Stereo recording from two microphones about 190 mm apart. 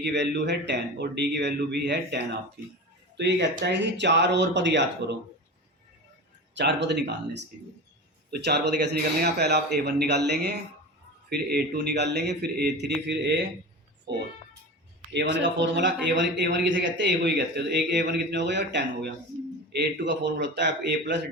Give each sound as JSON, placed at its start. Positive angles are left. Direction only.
{"t": 0.0, "sound": "a man's voice", "side_deg": -65}
{"t": 6.5, "sound": "a man's voice", "side_deg": -65}